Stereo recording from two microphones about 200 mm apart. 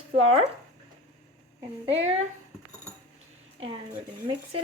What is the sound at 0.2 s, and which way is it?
Speech, 30° right (ahead or behind).